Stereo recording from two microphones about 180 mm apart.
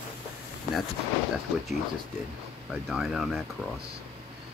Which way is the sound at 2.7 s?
Centre (ahead or behind).